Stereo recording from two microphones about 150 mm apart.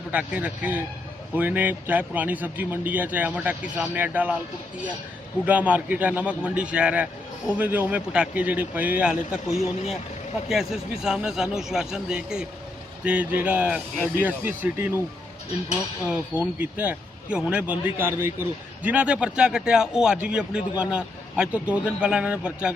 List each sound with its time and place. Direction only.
0.1 s speech: 10° right (ahead or behind)
5.5 s a man's voice: 10° right (ahead or behind)
16.0 s speech: 15° right (ahead or behind)